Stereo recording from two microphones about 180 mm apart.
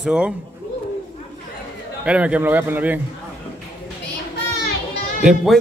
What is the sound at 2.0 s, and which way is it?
Speech, 5° right (ahead or behind).